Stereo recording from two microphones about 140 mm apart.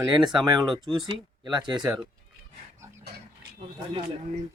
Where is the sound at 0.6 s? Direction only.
Centre (ahead or behind).